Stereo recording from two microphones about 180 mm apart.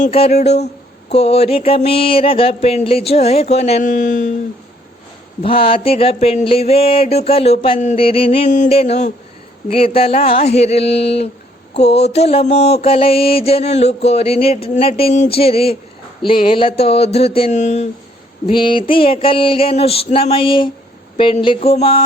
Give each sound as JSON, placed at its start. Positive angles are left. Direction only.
{"t": 0.0, "sound": "mantra", "side_deg": 35}
{"t": 5.4, "sound": "mantra", "side_deg": 30}
{"t": 18.4, "sound": "mantra", "side_deg": 30}